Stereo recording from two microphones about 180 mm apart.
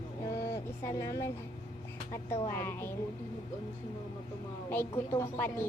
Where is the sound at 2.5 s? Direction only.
10° left (ahead or behind).